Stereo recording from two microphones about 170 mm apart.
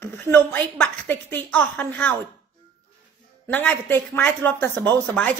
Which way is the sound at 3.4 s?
10° left (ahead or behind).